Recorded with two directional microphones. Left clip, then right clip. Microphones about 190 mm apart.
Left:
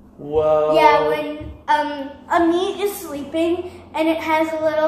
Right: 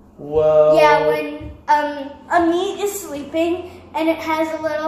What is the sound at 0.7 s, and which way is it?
Speech, centre (ahead or behind).